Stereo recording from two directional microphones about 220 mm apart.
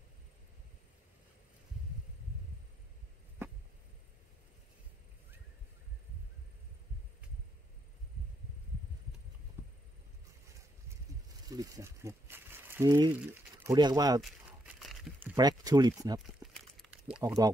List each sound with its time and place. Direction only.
9.6 s vehicle: 10° right (ahead or behind)
11.4 s speech: 15° right (ahead or behind)
14.8 s crumpling: centre (ahead or behind)
15.3 s speech: 15° right (ahead or behind)
16.4 s a sound: 10° right (ahead or behind)
17.2 s speech: 15° right (ahead or behind)